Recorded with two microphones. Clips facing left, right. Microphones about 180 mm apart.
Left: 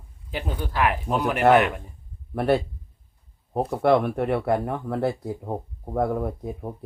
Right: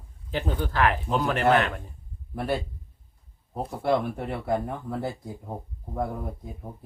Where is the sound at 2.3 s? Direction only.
65° left (ahead or behind).